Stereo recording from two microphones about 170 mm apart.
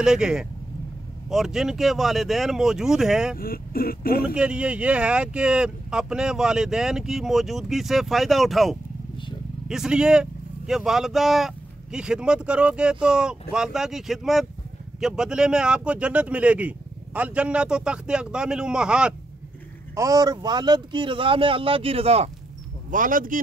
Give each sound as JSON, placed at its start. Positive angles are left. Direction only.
{"t": 0.0, "sound": "speech", "side_deg": -5}
{"t": 3.3, "sound": "speech", "side_deg": 60}
{"t": 4.2, "sound": "speech", "side_deg": -5}
{"t": 20.0, "sound": "speech", "side_deg": -20}
{"t": 22.8, "sound": "speech", "side_deg": -50}